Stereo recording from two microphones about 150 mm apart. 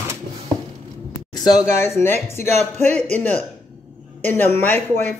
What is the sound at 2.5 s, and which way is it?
Speech, 50° right (ahead or behind).